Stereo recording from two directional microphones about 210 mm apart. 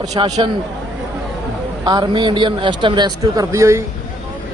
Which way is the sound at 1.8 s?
20° right (ahead or behind).